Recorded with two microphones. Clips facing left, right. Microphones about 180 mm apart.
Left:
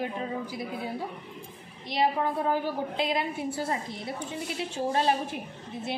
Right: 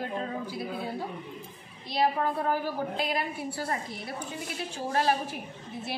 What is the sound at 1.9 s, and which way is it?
A woman's voice, 20° left (ahead or behind).